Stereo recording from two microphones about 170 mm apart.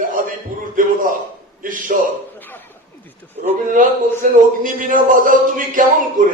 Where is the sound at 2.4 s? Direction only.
10° left (ahead or behind).